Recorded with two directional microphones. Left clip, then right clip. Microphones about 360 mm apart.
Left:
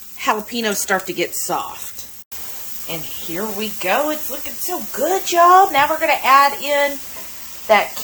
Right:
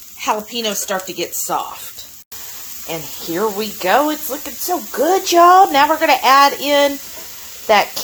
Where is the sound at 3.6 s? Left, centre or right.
Centre.